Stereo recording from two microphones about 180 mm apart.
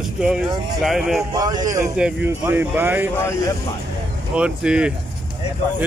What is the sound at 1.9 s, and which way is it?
A man's voice, 10° right (ahead or behind).